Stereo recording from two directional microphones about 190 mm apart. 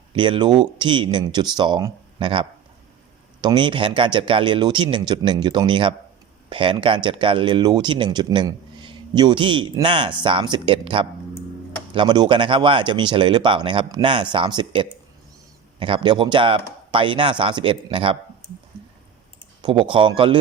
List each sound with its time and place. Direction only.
0.1 s speech: 25° right (ahead or behind)
19.6 s speech: 25° right (ahead or behind)